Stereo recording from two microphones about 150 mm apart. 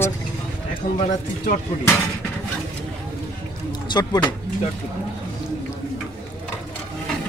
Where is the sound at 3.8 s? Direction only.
30° left (ahead or behind).